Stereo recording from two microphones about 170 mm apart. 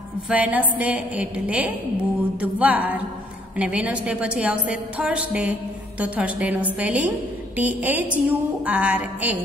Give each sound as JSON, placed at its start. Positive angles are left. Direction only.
{"t": 0.3, "sound": "a woman's voice", "side_deg": -10}